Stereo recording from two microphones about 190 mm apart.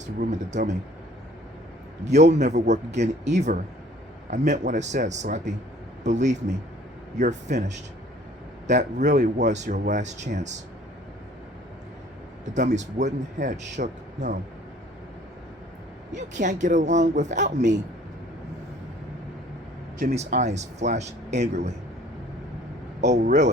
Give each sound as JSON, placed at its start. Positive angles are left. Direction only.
{"t": 0.0, "sound": "speech", "side_deg": -40}
{"t": 2.0, "sound": "a man's voice", "side_deg": -35}
{"t": 8.6, "sound": "speech", "side_deg": -40}
{"t": 12.5, "sound": "speech", "side_deg": -40}
{"t": 16.1, "sound": "speech", "side_deg": -40}
{"t": 20.1, "sound": "speech", "side_deg": -35}
{"t": 23.2, "sound": "speech", "side_deg": -40}